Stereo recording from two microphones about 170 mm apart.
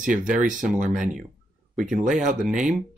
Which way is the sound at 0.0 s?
50° right (ahead or behind).